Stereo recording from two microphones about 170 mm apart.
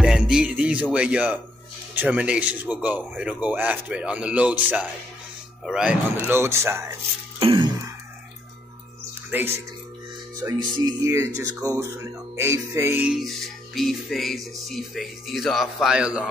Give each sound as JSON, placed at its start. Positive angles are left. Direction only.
{"t": 0.0, "sound": "music", "side_deg": -5}
{"t": 0.9, "sound": "speech", "side_deg": -5}
{"t": 7.3, "sound": "throat clearing", "side_deg": -30}
{"t": 10.4, "sound": "speech", "side_deg": -20}